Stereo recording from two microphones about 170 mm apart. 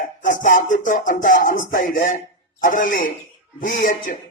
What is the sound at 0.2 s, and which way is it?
Music, 50° left (ahead or behind).